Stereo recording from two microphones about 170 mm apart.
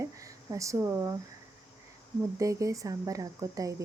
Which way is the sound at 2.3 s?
20° right (ahead or behind).